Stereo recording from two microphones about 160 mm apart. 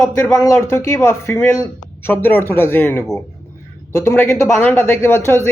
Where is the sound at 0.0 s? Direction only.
15° left (ahead or behind).